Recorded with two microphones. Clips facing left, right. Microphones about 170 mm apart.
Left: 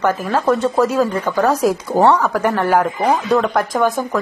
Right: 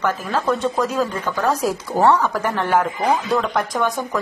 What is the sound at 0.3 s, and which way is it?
Speech, 10° left (ahead or behind).